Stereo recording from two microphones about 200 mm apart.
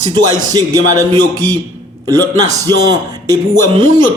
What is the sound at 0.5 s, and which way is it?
Speech, 15° right (ahead or behind).